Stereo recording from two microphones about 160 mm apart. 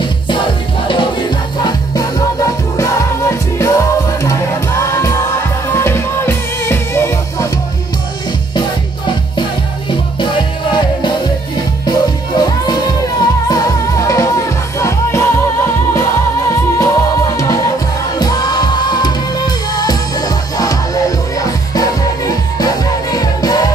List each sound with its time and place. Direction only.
0.0 s music: 30° left (ahead or behind)
4.9 s music: 20° left (ahead or behind)
9.8 s music: 30° left (ahead or behind)